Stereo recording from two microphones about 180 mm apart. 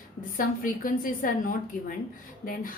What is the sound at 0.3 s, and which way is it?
A woman's voice, 50° left (ahead or behind).